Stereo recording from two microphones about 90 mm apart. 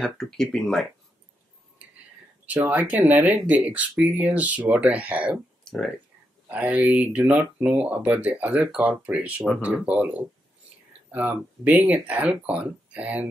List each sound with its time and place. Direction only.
0.0 s speech: 5° left (ahead or behind)
2.4 s speech: 15° right (ahead or behind)
5.6 s a sound: 5° left (ahead or behind)
6.5 s speech: 15° right (ahead or behind)